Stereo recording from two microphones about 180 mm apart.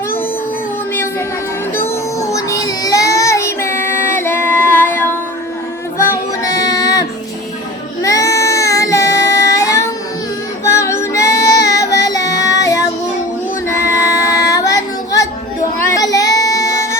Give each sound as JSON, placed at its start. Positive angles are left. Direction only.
{"t": 1.7, "sound": "child singing", "side_deg": 15}
{"t": 6.0, "sound": "female singing", "side_deg": 15}
{"t": 8.0, "sound": "child singing", "side_deg": 20}
{"t": 10.6, "sound": "female singing", "side_deg": 15}
{"t": 13.7, "sound": "singing", "side_deg": 15}
{"t": 15.8, "sound": "child singing", "side_deg": 15}